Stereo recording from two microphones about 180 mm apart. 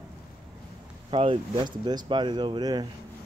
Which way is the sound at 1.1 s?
30° right (ahead or behind).